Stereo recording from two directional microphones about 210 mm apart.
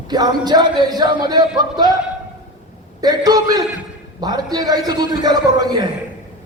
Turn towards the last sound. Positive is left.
turn(degrees=-20)  # may be behind; listen again after turning